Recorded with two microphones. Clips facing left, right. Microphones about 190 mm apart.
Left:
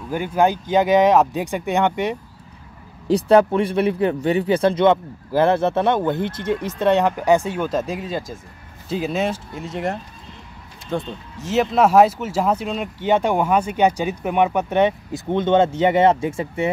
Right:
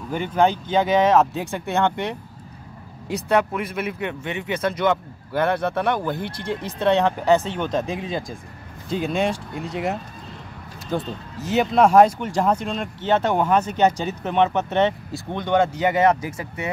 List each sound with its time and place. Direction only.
0.1 s speech: 10° left (ahead or behind)
3.1 s speech: 30° left (ahead or behind)